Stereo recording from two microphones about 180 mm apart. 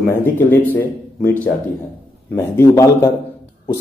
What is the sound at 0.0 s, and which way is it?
Speech, 10° left (ahead or behind).